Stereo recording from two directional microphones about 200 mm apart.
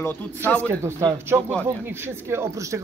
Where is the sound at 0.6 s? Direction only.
15° right (ahead or behind).